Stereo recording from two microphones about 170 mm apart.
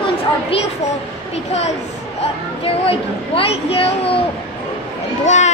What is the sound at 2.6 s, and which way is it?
A child's voice, 35° left (ahead or behind).